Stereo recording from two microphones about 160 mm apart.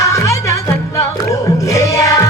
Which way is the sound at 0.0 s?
20° left (ahead or behind).